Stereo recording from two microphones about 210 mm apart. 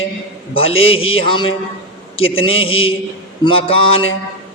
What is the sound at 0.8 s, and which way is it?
A man's voice, 25° left (ahead or behind).